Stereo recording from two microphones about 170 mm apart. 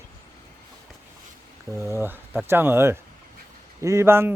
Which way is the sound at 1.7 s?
15° right (ahead or behind).